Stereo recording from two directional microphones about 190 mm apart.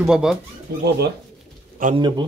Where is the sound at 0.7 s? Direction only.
60° right (ahead or behind).